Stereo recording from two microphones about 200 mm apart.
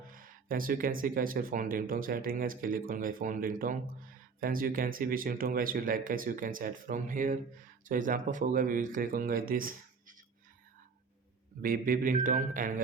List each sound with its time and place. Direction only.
0.1 s speech: 45° right (ahead or behind)
11.6 s speech: 45° right (ahead or behind)